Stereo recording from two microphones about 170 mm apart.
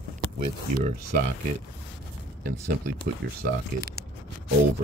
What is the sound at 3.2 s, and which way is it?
Speech, 70° right (ahead or behind).